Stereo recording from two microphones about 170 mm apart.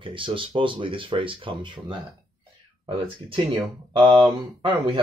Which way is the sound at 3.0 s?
30° right (ahead or behind).